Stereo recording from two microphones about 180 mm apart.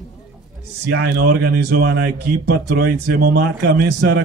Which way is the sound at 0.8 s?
70° right (ahead or behind).